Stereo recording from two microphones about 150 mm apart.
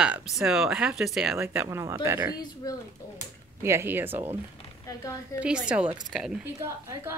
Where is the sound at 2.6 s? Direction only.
25° left (ahead or behind).